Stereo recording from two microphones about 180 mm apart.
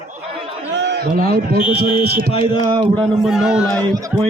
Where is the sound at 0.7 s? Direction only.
70° right (ahead or behind); by 1.6 s 55° right (ahead or behind).